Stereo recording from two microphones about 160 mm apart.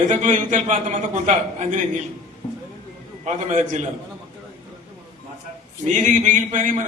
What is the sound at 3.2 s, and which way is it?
Speech, 45° right (ahead or behind).